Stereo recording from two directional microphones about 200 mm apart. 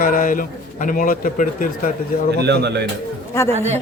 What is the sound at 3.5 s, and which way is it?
Speech, 35° right (ahead or behind).